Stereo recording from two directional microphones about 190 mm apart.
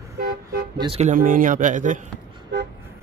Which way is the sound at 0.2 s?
55° right (ahead or behind).